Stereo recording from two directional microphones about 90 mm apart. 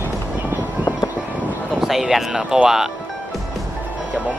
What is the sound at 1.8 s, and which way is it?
Speech, 5° right (ahead or behind).